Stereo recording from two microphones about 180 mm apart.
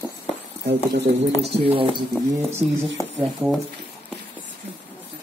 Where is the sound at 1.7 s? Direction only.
30° right (ahead or behind).